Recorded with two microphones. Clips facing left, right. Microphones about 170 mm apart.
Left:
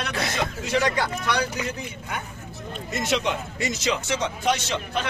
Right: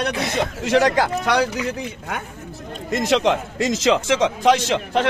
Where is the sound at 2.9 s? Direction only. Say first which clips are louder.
Right 7 dB; 90° right.